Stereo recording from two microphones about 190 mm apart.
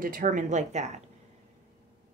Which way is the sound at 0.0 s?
45° right (ahead or behind).